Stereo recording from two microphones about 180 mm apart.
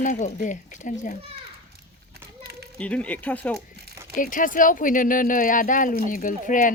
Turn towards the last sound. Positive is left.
turn(degrees=45)  # may be behind; listen again after turning